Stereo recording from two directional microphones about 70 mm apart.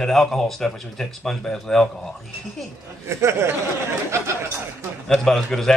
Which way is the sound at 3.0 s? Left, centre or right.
Right.